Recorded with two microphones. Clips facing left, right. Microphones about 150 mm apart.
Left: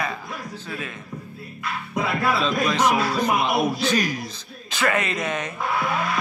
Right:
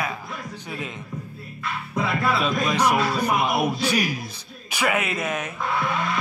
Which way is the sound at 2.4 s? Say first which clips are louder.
Left 1 dB; 10° right (ahead or behind).